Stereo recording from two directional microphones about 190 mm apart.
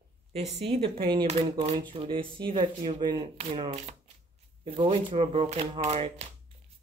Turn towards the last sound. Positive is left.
turn(degrees=-35)  # may be behind; listen again after turning